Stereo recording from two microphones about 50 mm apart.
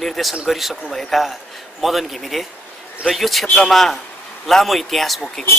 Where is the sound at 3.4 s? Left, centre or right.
Left.